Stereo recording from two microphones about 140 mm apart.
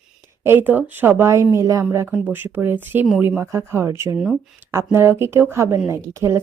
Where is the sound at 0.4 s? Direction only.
15° right (ahead or behind).